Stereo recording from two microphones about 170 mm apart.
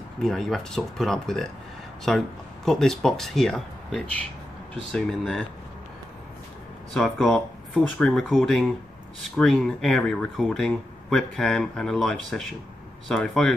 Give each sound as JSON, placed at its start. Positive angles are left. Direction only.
{"t": 0.2, "sound": "speech", "side_deg": 0}
{"t": 6.9, "sound": "speech", "side_deg": 0}